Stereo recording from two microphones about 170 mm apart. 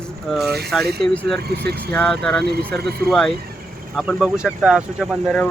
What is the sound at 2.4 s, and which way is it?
Speech, 70° right (ahead or behind).